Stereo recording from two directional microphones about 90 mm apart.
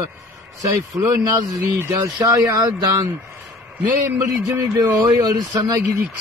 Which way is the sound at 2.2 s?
40° right (ahead or behind).